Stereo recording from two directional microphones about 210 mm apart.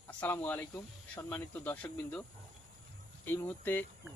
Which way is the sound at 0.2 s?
10° left (ahead or behind).